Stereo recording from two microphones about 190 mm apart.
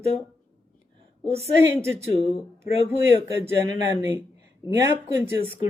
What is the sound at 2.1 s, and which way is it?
Speech, 35° left (ahead or behind).